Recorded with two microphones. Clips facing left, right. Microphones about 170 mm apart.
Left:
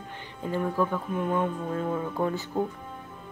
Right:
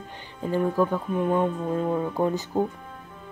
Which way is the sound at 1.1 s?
20° right (ahead or behind).